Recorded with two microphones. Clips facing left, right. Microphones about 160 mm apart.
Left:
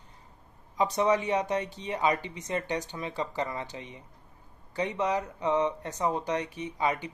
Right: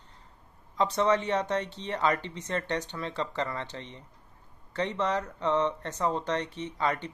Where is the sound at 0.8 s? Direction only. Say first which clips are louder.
Even; 15° left (ahead or behind).